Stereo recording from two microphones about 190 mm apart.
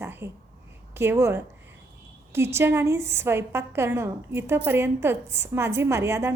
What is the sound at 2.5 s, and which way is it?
A woman's voice, 15° right (ahead or behind).